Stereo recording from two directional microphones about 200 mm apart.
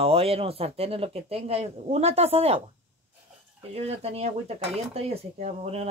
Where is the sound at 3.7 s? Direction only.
30° right (ahead or behind).